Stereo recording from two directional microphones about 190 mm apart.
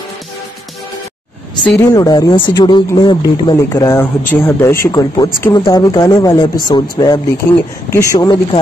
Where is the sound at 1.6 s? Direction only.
15° left (ahead or behind).